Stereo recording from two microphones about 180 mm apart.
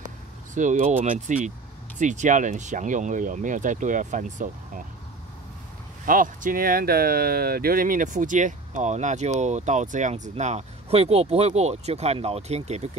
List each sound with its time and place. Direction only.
0.6 s speech: 45° right (ahead or behind)
6.0 s speech: 50° right (ahead or behind)